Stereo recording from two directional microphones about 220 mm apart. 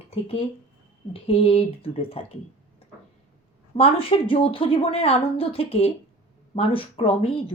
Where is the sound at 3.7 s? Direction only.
25° left (ahead or behind).